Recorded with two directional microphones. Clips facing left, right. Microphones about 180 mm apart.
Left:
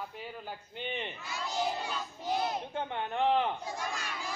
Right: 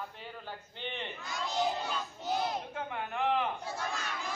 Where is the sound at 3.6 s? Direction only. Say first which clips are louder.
Even; 10° left (ahead or behind).